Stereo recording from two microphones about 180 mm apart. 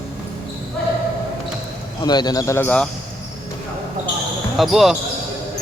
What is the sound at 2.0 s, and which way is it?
Speech, 20° left (ahead or behind).